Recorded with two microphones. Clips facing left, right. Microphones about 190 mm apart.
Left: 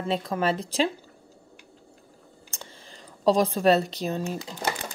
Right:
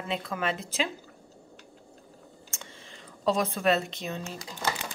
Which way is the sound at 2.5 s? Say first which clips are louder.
Left 3 dB; 35° left (ahead or behind).